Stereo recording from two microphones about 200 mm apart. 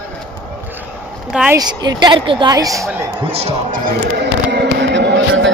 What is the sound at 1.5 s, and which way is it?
A woman's voice, 20° right (ahead or behind).